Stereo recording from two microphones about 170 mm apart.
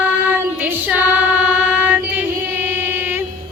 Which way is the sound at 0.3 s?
10° right (ahead or behind).